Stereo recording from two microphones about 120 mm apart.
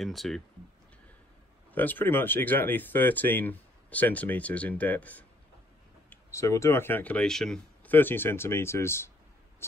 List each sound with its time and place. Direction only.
0.0 s speech: centre (ahead or behind)
1.7 s speech: 15° left (ahead or behind)
6.0 s speech: 25° left (ahead or behind)